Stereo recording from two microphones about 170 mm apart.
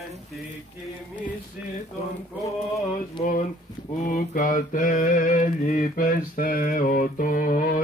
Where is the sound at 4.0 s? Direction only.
50° left (ahead or behind).